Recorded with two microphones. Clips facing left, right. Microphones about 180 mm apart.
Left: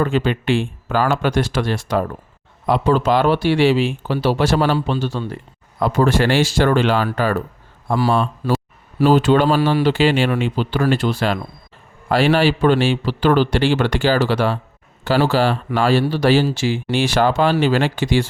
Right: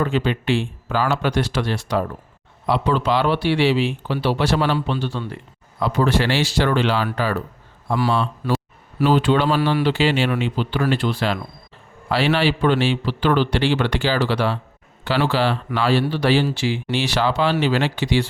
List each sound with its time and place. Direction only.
0.0 s speech: 50° left (ahead or behind)